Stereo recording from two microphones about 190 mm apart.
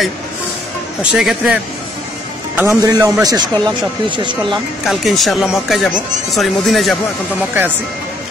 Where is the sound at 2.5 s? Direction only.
15° right (ahead or behind).